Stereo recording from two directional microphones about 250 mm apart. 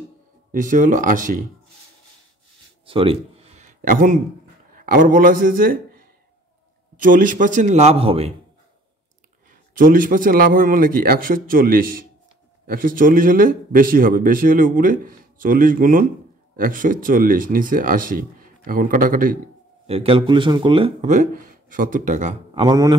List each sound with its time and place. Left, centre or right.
0.5 s a man's voice: right
2.9 s a sound: right
4.7 s a man's voice: right
9.5 s a man's voice: right
19.9 s speech: right